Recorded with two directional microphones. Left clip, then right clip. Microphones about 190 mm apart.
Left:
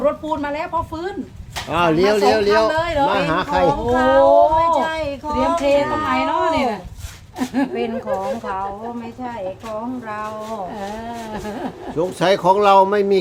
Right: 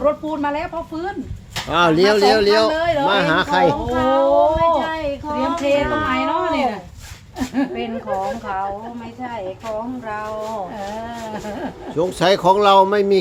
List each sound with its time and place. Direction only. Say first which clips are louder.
0.0 s speech: right 1 dB; 55° left (ahead or behind)
1.7 s speech: right 2 dB; 15° right (ahead or behind)
2.7 s speech: even; 55° left (ahead or behind)
3.1 s speech: right 2 dB; 20° right (ahead or behind)
3.9 s speech: left 5 dB; 40° left (ahead or behind)
11.9 s speech: right 1 dB; 15° right (ahead or behind)